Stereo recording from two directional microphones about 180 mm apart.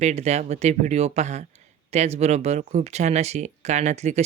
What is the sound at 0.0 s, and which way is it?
Speech, 40° right (ahead or behind).